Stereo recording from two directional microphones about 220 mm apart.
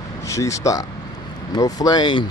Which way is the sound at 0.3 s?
15° left (ahead or behind).